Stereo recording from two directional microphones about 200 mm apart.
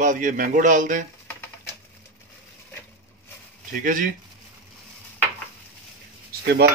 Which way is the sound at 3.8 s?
40° right (ahead or behind).